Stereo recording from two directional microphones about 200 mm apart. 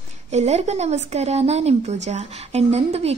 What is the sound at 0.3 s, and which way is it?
A woman's voice, 35° right (ahead or behind).